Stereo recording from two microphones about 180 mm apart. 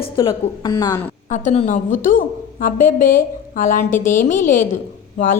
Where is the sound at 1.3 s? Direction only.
40° left (ahead or behind).